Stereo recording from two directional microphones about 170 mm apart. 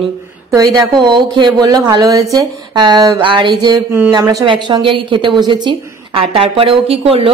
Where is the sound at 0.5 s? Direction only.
20° right (ahead or behind).